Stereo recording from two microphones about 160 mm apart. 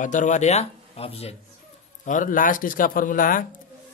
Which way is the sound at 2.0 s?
55° left (ahead or behind).